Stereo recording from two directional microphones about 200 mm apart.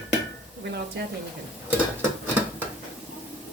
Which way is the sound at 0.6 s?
55° right (ahead or behind).